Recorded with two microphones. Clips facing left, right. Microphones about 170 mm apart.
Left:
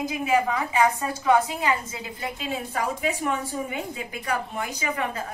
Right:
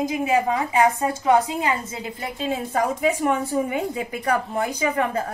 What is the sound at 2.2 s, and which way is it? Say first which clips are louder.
Speech: right 5 dB; 35° right (ahead or behind).